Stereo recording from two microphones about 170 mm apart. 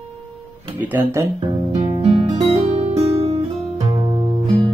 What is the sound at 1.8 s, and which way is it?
Music, 35° right (ahead or behind).